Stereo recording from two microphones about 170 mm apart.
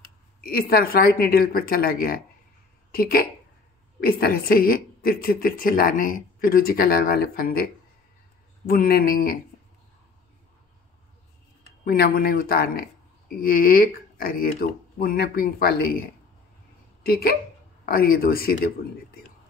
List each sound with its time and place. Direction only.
0.4 s a woman's voice: 60° left (ahead or behind)
8.6 s a woman's voice: 60° left (ahead or behind)
11.8 s a woman's voice: 60° left (ahead or behind)